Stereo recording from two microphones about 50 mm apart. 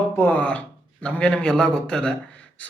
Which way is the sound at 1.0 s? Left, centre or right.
Centre.